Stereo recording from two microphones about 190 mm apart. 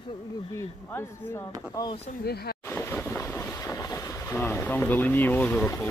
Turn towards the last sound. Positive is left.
turn(degrees=10)  # may be behind; listen again after turning